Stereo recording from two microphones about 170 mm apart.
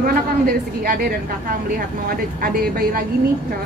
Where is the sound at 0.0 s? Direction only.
60° right (ahead or behind).